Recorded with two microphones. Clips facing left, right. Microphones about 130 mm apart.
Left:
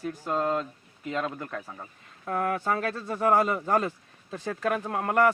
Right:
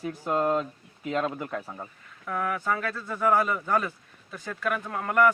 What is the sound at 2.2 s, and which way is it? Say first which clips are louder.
A man's voice: left 1 dB; 35° left (ahead or behind).